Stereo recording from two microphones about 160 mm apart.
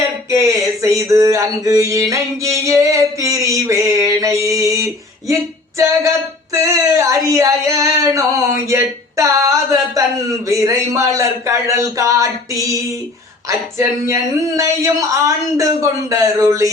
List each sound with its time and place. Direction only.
0.3 s mantra: 20° right (ahead or behind)
5.3 s female singing: 20° right (ahead or behind)
8.7 s a sound: 20° right (ahead or behind)
10.5 s mantra: 20° right (ahead or behind)